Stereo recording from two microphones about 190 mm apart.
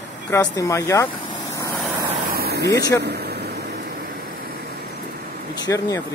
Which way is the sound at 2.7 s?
15° left (ahead or behind).